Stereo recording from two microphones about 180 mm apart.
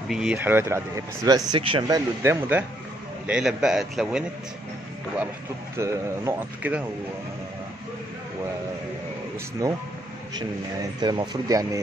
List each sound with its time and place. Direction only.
0.1 s speech: 5° right (ahead or behind); by 2.0 s 25° right (ahead or behind)
2.2 s a man's voice: 15° right (ahead or behind)
5.8 s speech: 15° right (ahead or behind)
9.6 s speech: 20° right (ahead or behind)